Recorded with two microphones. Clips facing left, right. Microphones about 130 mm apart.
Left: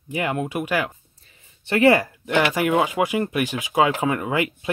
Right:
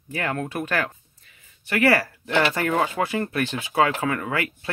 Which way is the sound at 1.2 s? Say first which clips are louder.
Left 1 dB; 30° left (ahead or behind).